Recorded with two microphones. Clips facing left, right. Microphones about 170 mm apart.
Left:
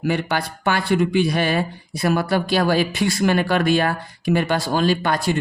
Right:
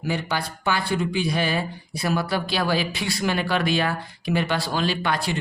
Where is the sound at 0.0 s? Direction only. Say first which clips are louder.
Left 5 dB; 55° left (ahead or behind).